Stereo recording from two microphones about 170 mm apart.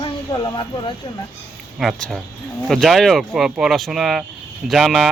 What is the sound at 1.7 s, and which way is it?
Speech, centre (ahead or behind).